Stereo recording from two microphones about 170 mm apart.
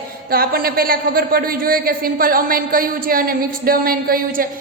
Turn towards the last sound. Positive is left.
turn(degrees=-60)  # may be behind; listen again after turning